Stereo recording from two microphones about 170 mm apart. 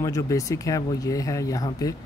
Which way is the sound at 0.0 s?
20° left (ahead or behind).